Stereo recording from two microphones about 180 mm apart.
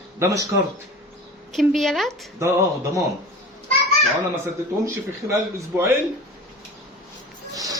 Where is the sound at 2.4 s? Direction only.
15° right (ahead or behind).